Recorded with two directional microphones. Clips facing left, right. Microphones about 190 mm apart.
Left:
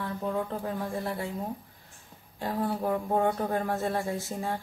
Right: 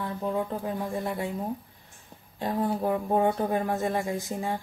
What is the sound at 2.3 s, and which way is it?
Speech, 20° right (ahead or behind).